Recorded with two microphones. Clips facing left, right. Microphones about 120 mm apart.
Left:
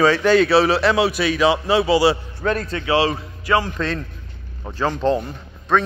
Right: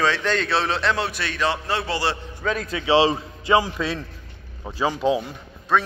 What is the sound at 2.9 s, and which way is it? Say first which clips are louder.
A man's voice: right 1 dB; 20° right (ahead or behind).